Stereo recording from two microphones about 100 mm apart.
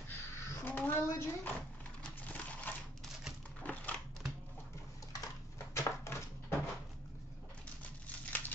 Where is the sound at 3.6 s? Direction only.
15° left (ahead or behind).